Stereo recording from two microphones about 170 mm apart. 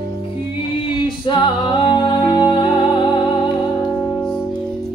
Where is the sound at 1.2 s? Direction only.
25° left (ahead or behind).